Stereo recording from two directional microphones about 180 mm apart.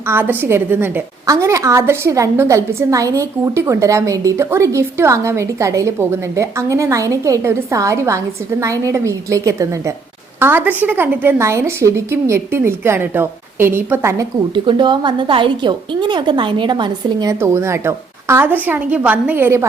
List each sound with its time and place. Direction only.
0.1 s a woman's voice: 10° right (ahead or behind)
14.5 s a woman's voice: 25° right (ahead or behind)